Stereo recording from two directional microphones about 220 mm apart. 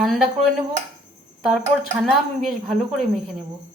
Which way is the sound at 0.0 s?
Centre (ahead or behind).